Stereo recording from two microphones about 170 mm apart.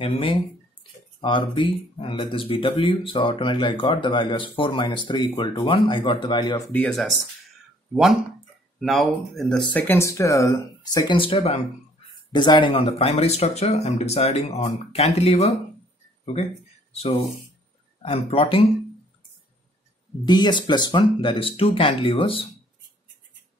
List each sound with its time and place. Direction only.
0.0 s speech: 30° left (ahead or behind)
6.7 s speech: 5° left (ahead or behind); by 11.6 s 35° left (ahead or behind)
12.3 s speech: 25° left (ahead or behind)
18.0 s speech: 35° left (ahead or behind)
20.2 s speech: 25° left (ahead or behind)